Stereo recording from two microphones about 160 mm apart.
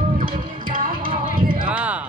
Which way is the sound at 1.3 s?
60° right (ahead or behind).